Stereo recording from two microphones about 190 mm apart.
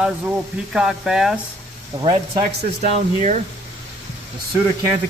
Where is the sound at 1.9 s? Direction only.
20° right (ahead or behind).